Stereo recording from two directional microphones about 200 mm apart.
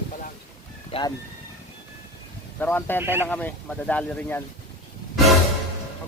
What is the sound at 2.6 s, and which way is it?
Speech, 10° left (ahead or behind).